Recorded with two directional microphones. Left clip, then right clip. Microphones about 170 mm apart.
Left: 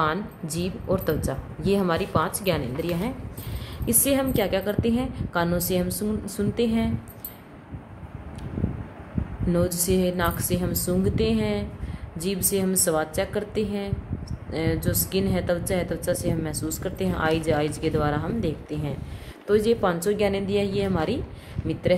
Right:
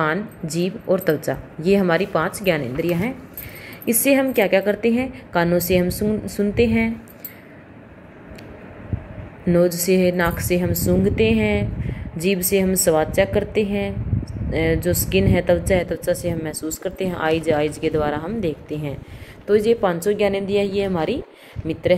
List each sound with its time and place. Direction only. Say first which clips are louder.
0.0 s a woman's voice: right 3 dB; 10° right (ahead or behind)
9.5 s a woman's voice: right 7 dB; 15° right (ahead or behind)